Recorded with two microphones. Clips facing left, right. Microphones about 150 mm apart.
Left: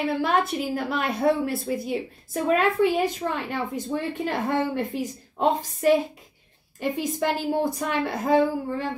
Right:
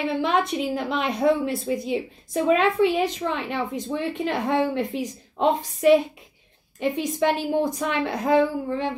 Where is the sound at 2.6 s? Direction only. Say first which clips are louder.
Right 1 dB; 20° right (ahead or behind).